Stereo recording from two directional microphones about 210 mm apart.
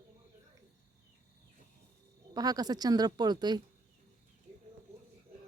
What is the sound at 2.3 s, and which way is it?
Speech, 20° right (ahead or behind).